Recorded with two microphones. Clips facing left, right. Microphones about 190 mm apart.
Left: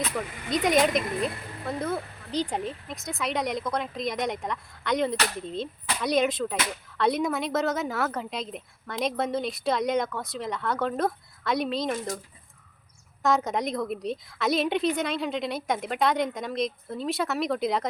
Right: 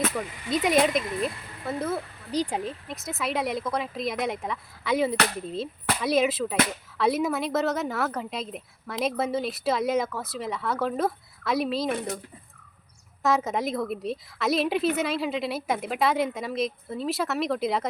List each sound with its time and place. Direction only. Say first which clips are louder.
0.2 s speech: even; 5° right (ahead or behind)
11.9 s speech: right 1 dB; 60° right (ahead or behind)
13.2 s speech: even; centre (ahead or behind)